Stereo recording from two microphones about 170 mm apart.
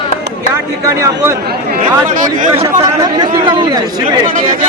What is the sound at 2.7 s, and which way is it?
Speech, 20° right (ahead or behind).